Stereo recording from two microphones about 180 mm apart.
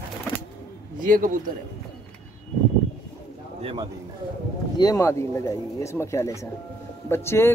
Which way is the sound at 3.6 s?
30° right (ahead or behind).